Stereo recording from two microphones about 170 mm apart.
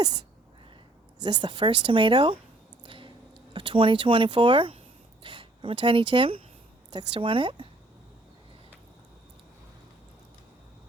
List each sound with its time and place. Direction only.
1.2 s speech: 25° right (ahead or behind)
2.8 s squish: 30° right (ahead or behind)
3.5 s speech: 30° right (ahead or behind)